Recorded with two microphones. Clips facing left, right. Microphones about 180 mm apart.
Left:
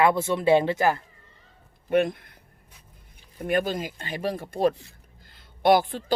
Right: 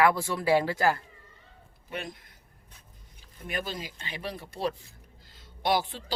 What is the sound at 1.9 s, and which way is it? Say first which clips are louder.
Speech: left 16 dB; 55° left (ahead or behind).